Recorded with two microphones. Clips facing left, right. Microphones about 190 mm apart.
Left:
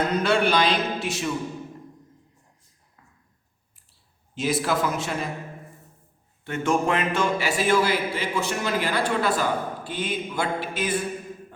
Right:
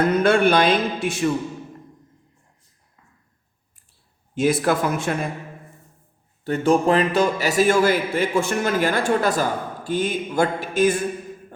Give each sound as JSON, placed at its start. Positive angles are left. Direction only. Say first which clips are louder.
{"t": 0.0, "sound": "music", "louder": "right 5 dB", "side_deg": -55}
{"t": 4.4, "sound": "a man's voice", "louder": "right 5 dB", "side_deg": -50}
{"t": 6.4, "sound": "a man's voice", "louder": "right 5 dB", "side_deg": -35}